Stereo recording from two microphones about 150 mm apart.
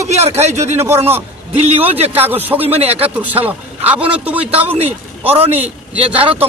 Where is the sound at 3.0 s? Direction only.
10° right (ahead or behind).